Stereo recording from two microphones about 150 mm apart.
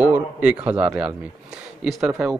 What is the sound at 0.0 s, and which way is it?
A man's voice, 10° right (ahead or behind).